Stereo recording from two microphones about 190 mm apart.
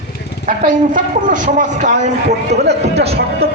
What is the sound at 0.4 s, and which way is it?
Speech, 45° right (ahead or behind).